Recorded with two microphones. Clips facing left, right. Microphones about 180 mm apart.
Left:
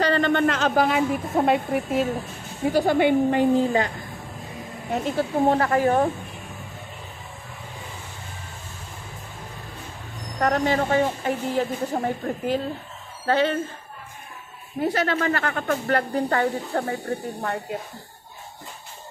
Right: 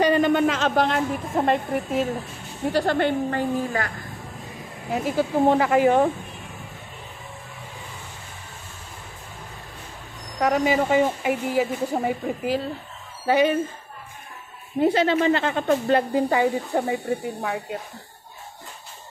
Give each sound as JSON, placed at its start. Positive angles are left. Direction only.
{"t": 0.0, "sound": "a woman's voice", "side_deg": -10}
{"t": 4.9, "sound": "speech", "side_deg": -5}
{"t": 10.4, "sound": "speech", "side_deg": -10}
{"t": 14.8, "sound": "speech", "side_deg": -20}
{"t": 17.4, "sound": "speech", "side_deg": -5}